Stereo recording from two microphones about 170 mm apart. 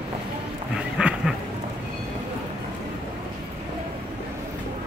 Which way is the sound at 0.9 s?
5° right (ahead or behind).